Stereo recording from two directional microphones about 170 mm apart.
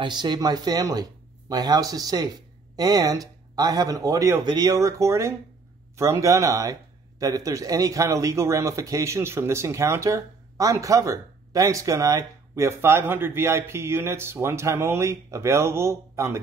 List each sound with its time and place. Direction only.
0.0 s speech: 25° right (ahead or behind)